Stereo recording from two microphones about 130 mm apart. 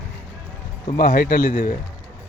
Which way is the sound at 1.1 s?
90° left.